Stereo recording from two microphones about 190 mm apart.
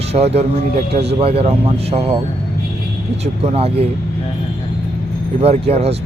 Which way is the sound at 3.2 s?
35° right (ahead or behind).